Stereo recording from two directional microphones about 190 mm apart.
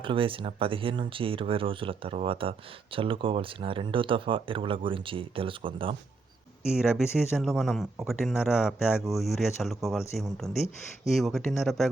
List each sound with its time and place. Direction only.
0.0 s speech: 30° right (ahead or behind)
6.7 s speech: 5° right (ahead or behind)